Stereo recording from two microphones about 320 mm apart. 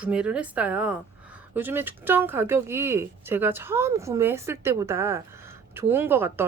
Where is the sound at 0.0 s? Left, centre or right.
Centre.